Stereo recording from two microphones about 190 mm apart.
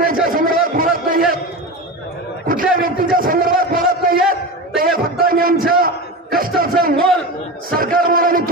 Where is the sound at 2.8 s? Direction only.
50° right (ahead or behind).